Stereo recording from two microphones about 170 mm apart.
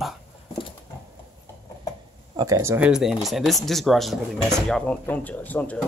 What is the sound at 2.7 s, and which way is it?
Speech, 5° right (ahead or behind).